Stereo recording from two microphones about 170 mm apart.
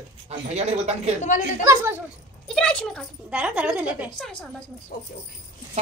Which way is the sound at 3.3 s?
5° right (ahead or behind).